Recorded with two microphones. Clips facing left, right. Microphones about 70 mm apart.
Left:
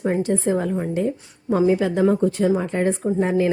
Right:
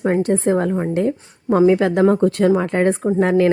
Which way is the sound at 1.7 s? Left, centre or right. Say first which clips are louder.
Right 4 dB; right.